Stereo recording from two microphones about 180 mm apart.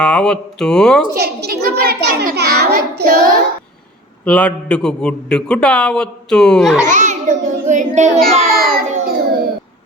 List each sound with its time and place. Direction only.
0.0 s a man's voice: 5° left (ahead or behind)
1.1 s a child's voice: 60° right (ahead or behind)
4.3 s a man's voice: 5° left (ahead or behind)
6.8 s a child's voice: 45° right (ahead or behind)
8.4 s child singing: 55° right (ahead or behind)